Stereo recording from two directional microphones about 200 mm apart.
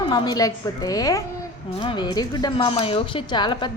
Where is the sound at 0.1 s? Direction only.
20° left (ahead or behind).